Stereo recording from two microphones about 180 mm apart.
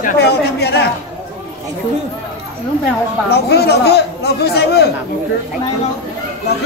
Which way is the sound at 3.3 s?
60° left (ahead or behind).